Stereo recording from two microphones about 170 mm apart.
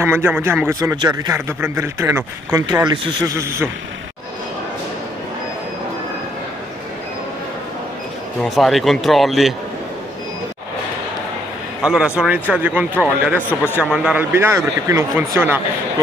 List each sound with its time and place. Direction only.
0.0 s speech: 15° right (ahead or behind)
8.4 s speech: centre (ahead or behind)
11.8 s speech: 5° right (ahead or behind)
13.5 s a man's voice: 10° left (ahead or behind)
13.8 s speech: 5° right (ahead or behind)